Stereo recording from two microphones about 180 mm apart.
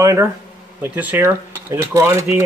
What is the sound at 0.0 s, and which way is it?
Speech, 15° right (ahead or behind).